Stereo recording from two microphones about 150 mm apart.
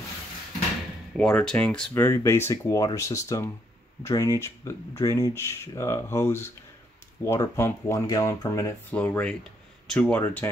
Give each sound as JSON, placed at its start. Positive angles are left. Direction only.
{"t": 1.1, "sound": "speech", "side_deg": 5}
{"t": 8.9, "sound": "speech", "side_deg": 10}